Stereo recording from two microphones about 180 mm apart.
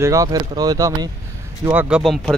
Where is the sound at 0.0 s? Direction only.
20° right (ahead or behind).